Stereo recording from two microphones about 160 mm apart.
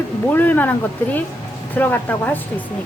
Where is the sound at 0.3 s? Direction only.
10° left (ahead or behind).